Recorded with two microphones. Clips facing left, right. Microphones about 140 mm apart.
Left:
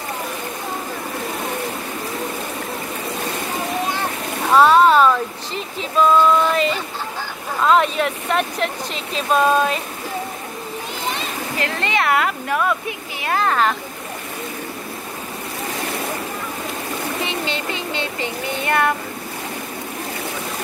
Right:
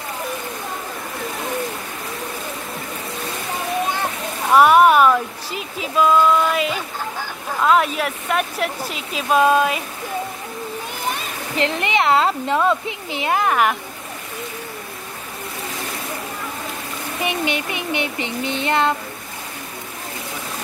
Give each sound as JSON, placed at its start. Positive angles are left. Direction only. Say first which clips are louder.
{"t": 4.5, "sound": "speech", "louder": "even", "side_deg": -10}
{"t": 11.5, "sound": "speech", "louder": "right 3 dB", "side_deg": -20}
{"t": 17.2, "sound": "speech", "louder": "right 2 dB", "side_deg": -15}